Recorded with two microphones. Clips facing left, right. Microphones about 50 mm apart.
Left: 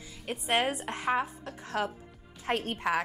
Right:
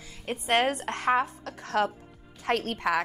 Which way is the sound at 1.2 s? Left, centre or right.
Centre.